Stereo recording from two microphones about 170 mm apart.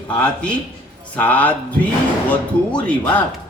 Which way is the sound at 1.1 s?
10° left (ahead or behind).